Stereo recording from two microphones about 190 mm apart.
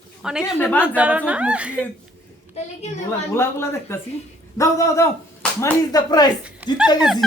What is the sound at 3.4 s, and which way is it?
Speech, 15° left (ahead or behind).